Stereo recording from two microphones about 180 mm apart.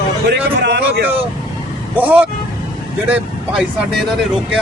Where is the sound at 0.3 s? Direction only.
70° right (ahead or behind).